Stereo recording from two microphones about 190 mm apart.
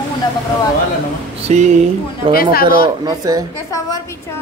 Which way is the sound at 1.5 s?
40° right (ahead or behind).